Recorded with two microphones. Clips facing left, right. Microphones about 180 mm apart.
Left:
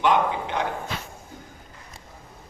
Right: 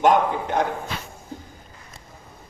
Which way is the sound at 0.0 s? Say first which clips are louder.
Right 3 dB; 45° right (ahead or behind).